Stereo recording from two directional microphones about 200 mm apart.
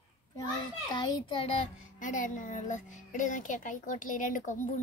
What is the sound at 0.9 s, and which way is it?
Speech, 25° left (ahead or behind).